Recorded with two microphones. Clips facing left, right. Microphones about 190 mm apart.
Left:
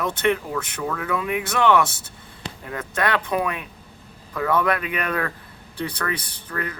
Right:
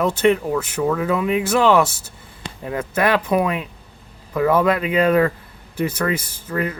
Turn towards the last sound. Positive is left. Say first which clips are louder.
# right 7 dB
turn(degrees=-25)  # may be behind; listen again after turning